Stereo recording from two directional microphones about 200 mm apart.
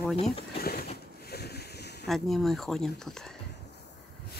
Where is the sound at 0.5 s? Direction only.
50° left (ahead or behind).